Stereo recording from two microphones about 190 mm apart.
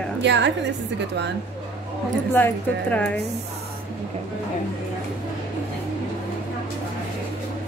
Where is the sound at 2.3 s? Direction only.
10° left (ahead or behind).